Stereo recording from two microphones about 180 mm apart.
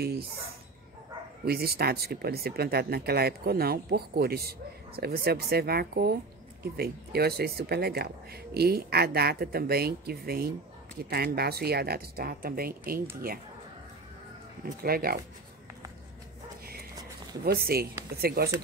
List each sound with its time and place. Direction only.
1.4 s speech: 60° right (ahead or behind)
14.6 s speech: 55° right (ahead or behind)
17.5 s speech: 60° right (ahead or behind)